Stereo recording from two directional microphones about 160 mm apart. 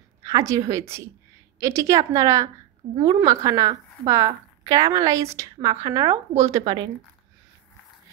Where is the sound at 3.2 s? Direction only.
20° right (ahead or behind).